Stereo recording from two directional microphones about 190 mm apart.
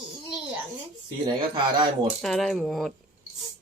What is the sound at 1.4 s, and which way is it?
Speech, 25° right (ahead or behind).